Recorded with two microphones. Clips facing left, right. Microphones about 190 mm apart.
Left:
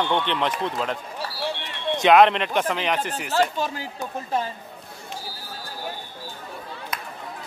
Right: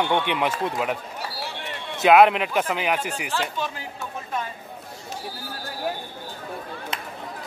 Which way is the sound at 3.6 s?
35° left (ahead or behind).